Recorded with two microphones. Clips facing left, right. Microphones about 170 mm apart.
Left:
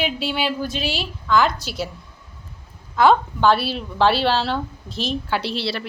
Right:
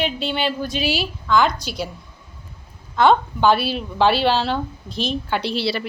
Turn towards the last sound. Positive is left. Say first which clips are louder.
# right 3 dB
turn(degrees=0)  # may be behind; listen again after turning